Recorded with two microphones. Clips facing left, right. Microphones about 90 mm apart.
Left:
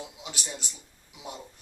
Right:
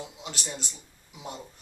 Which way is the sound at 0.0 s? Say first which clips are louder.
Right 2 dB; 10° left (ahead or behind).